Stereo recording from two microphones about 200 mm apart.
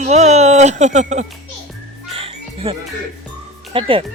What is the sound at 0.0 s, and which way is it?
Speech, 35° right (ahead or behind).